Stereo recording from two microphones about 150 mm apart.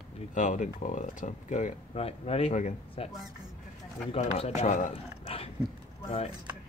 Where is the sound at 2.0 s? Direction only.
40° left (ahead or behind).